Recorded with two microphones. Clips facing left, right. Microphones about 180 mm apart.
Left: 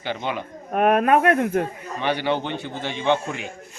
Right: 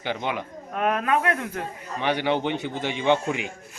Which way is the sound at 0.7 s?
55° left (ahead or behind).